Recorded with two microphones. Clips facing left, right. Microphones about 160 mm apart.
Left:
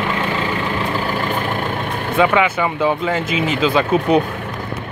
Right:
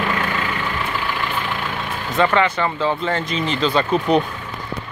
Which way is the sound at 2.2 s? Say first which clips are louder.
Left 2 dB; 10° left (ahead or behind).